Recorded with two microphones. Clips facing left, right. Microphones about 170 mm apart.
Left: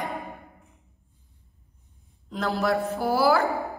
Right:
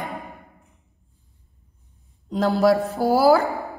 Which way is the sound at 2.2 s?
35° right (ahead or behind).